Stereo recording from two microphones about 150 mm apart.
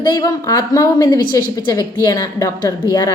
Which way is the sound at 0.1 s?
25° left (ahead or behind).